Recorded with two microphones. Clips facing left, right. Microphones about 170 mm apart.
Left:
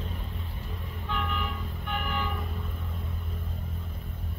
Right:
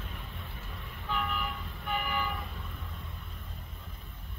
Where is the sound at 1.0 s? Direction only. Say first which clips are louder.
Left 1 dB; centre (ahead or behind).